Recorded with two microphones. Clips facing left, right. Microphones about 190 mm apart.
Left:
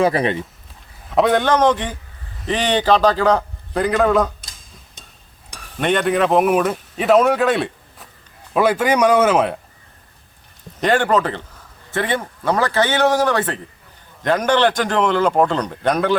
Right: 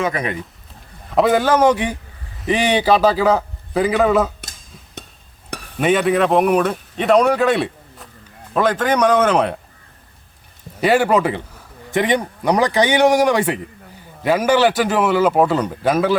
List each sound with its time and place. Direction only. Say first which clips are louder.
0.0 s speech: left 5 dB; 30° left (ahead or behind)
1.0 s a man's voice: right 1 dB; centre (ahead or behind)
5.8 s a man's voice: right 2 dB; 5° right (ahead or behind)
10.8 s a man's voice: right 2 dB; 10° right (ahead or behind)